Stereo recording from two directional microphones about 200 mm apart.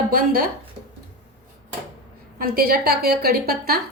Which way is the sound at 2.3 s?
50° right (ahead or behind).